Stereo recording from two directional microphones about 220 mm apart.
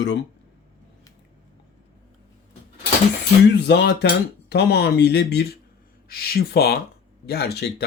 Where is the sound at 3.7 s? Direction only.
50° left (ahead or behind).